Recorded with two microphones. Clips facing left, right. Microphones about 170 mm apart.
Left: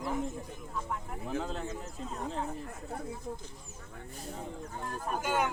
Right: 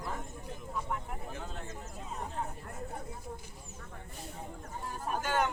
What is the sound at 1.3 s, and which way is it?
Speech, 90° left.